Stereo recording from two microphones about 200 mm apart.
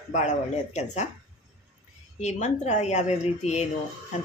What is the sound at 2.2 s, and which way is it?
A woman's voice, 35° left (ahead or behind).